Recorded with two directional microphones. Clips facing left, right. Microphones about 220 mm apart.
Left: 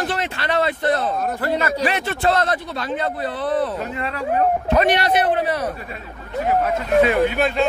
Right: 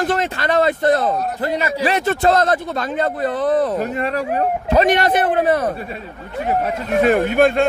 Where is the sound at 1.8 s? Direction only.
40° right (ahead or behind).